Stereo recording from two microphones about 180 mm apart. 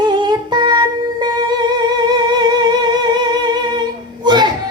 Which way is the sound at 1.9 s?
25° right (ahead or behind).